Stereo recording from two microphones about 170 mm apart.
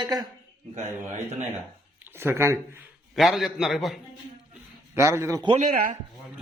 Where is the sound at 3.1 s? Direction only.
Centre (ahead or behind).